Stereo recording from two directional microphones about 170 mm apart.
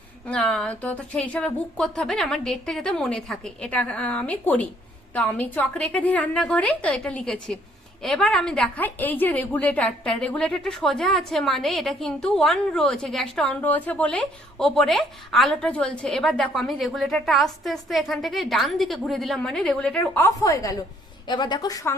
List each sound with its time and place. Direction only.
0.3 s a woman's voice: 5° left (ahead or behind); by 21.9 s 20° left (ahead or behind)